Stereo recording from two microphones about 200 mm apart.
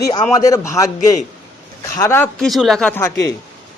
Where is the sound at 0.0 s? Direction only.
15° left (ahead or behind).